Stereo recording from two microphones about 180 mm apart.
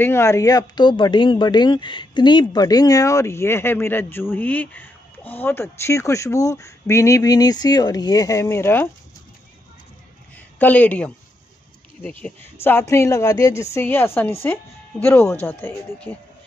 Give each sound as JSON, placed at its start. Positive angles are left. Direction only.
{"t": 0.0, "sound": "speech", "side_deg": 15}
{"t": 10.6, "sound": "speech", "side_deg": 10}